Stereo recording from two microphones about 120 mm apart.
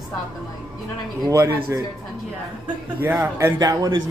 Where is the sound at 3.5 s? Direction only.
30° right (ahead or behind).